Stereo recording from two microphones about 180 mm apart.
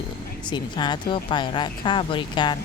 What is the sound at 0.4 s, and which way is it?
A woman's voice, 25° left (ahead or behind).